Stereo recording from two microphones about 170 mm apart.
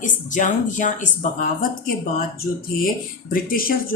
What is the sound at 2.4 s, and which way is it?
A woman's voice, 50° left (ahead or behind).